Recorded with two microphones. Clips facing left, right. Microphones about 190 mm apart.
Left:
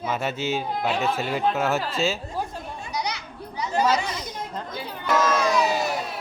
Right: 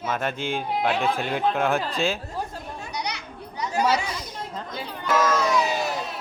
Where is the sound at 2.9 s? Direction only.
Centre (ahead or behind).